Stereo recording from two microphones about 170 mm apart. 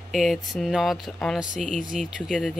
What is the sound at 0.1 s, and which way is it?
Speech, centre (ahead or behind).